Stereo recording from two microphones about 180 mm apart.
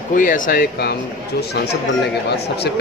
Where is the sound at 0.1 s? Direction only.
50° left (ahead or behind).